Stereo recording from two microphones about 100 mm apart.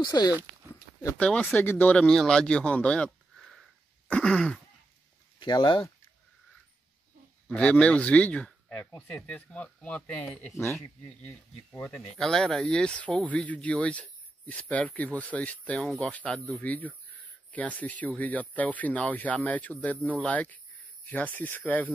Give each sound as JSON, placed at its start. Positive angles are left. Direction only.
{"t": 0.0, "sound": "speech", "side_deg": 45}
{"t": 1.1, "sound": "speech", "side_deg": 10}
{"t": 5.4, "sound": "speech", "side_deg": 50}
{"t": 7.4, "sound": "speech", "side_deg": 10}
{"t": 10.5, "sound": "speech", "side_deg": 30}
{"t": 12.2, "sound": "speech", "side_deg": 5}